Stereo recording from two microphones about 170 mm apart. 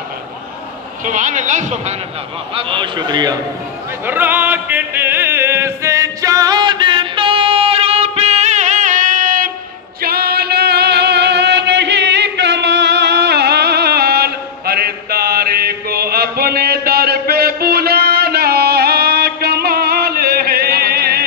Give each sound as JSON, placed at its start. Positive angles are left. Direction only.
{"t": 1.0, "sound": "speech", "side_deg": -50}
{"t": 2.5, "sound": "a man's voice", "side_deg": -30}
{"t": 4.0, "sound": "music", "side_deg": -10}
{"t": 10.0, "sound": "music", "side_deg": -65}